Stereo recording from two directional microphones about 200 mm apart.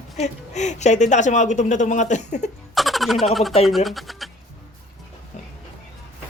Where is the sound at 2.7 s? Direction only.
Centre (ahead or behind).